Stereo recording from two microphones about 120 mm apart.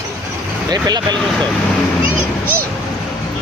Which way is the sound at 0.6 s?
35° right (ahead or behind).